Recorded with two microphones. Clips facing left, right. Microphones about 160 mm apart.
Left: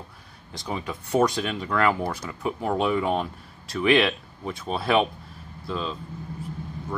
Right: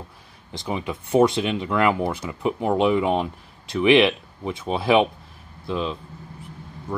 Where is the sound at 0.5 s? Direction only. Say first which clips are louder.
Right 3 dB; 20° right (ahead or behind).